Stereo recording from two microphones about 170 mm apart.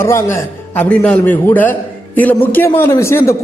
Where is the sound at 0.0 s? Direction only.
15° left (ahead or behind).